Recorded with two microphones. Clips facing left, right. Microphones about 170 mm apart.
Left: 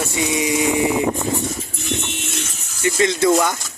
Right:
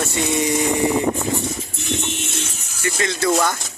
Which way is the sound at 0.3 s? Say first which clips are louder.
Even; 10° left (ahead or behind).